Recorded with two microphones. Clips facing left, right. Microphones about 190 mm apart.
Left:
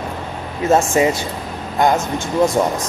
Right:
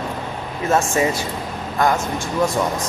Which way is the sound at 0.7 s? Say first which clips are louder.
Left 4 dB; 20° left (ahead or behind).